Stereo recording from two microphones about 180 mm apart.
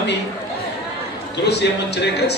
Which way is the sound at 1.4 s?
65° left (ahead or behind).